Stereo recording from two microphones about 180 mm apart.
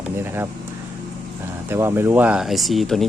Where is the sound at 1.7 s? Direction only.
15° right (ahead or behind).